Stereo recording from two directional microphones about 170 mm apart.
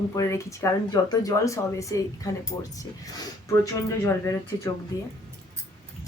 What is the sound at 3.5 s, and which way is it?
Speech, 15° left (ahead or behind).